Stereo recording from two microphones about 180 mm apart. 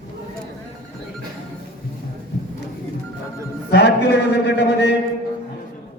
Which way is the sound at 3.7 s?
70° left (ahead or behind).